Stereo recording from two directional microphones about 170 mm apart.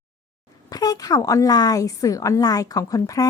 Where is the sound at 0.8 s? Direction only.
20° left (ahead or behind).